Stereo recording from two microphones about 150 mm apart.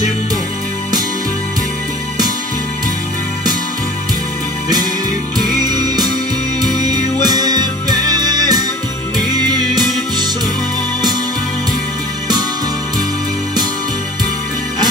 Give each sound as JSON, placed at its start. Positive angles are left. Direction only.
{"t": 5.6, "sound": "music", "side_deg": -25}